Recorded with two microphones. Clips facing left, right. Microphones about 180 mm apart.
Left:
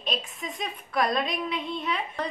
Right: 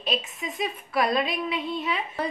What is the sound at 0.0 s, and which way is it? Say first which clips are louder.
A woman's voice: right 3 dB; centre (ahead or behind).